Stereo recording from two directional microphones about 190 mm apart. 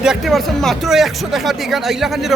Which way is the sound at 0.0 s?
Centre (ahead or behind).